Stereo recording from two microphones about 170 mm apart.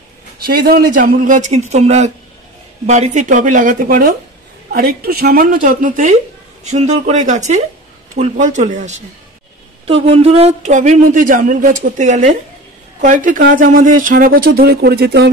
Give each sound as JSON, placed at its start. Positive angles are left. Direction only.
{"t": 0.5, "sound": "a man's voice", "side_deg": -60}
{"t": 4.7, "sound": "a man's voice", "side_deg": -65}
{"t": 9.8, "sound": "a man's voice", "side_deg": -35}